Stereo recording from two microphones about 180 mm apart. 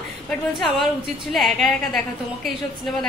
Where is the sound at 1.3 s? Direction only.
Centre (ahead or behind).